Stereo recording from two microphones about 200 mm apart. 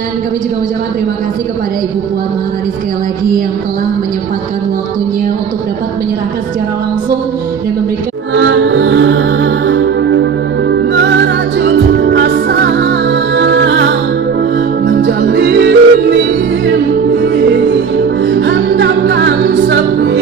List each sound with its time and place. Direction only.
8.4 s music: 60° right (ahead or behind)
11.6 s music: 60° right (ahead or behind)